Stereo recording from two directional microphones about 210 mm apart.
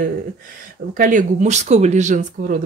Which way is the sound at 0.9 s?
40° right (ahead or behind).